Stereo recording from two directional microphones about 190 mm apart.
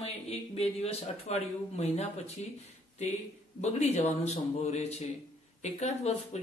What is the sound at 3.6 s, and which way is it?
Speech, 35° left (ahead or behind).